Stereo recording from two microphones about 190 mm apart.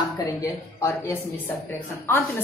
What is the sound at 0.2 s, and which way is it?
A woman's voice, 15° left (ahead or behind).